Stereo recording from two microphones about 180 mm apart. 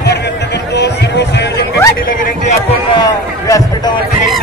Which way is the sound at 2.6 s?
20° left (ahead or behind).